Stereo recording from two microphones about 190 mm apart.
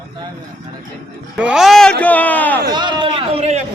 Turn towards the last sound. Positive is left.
turn(degrees=-35)  # may be behind; listen again after turning